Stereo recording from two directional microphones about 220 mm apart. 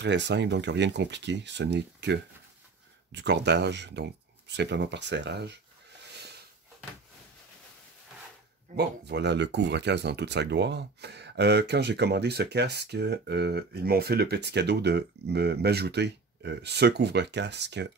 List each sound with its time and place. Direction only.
0.0 s speech: 50° right (ahead or behind)
8.7 s speech: 50° right (ahead or behind)